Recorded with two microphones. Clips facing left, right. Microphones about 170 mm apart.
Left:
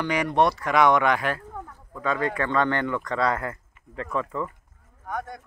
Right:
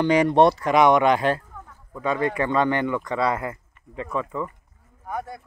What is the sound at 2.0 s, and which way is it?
Speech, 15° right (ahead or behind).